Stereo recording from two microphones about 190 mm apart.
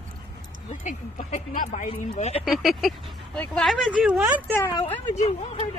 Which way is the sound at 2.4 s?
Centre (ahead or behind).